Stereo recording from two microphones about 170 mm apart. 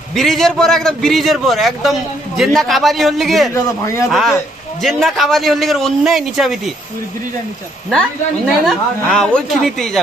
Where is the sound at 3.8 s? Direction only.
15° left (ahead or behind).